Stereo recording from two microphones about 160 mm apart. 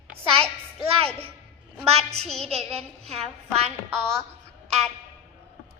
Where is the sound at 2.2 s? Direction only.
5° left (ahead or behind).